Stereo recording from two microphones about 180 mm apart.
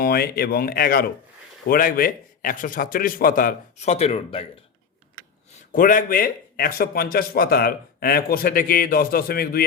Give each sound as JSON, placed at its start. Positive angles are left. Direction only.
{"t": 0.0, "sound": "a man's voice", "side_deg": 60}
{"t": 5.7, "sound": "a man's voice", "side_deg": 50}